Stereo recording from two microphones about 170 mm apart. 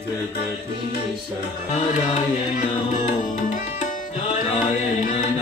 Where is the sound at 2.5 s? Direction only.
45° left (ahead or behind).